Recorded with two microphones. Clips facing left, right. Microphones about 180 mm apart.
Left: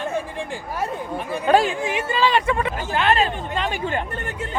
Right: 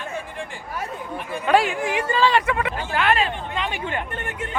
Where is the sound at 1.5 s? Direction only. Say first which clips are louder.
Left 1 dB; 40° left (ahead or behind).